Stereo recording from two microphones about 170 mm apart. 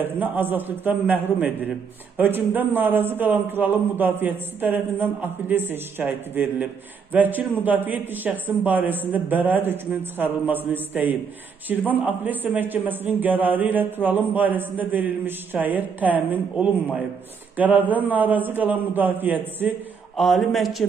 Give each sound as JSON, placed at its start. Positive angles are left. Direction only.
{"t": 0.0, "sound": "a man's voice", "side_deg": -10}
{"t": 20.2, "sound": "a man's voice", "side_deg": 0}